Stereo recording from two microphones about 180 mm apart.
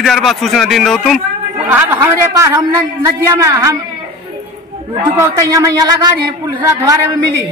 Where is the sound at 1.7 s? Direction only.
15° right (ahead or behind).